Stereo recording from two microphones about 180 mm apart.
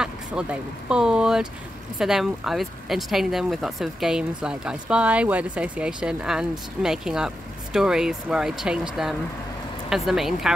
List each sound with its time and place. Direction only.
0.0 s speech: 5° right (ahead or behind)